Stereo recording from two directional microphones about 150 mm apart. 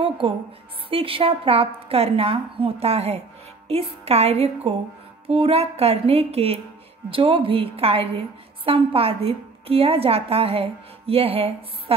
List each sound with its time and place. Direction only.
0.8 s a woman's voice: 35° right (ahead or behind)